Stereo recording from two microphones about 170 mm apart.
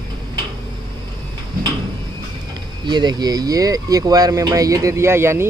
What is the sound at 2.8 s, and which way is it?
Speech, 25° right (ahead or behind).